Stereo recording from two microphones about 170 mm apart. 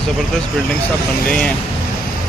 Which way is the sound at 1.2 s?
5° left (ahead or behind).